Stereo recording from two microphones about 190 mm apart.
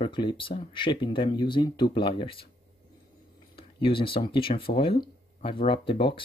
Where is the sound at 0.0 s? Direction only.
25° left (ahead or behind).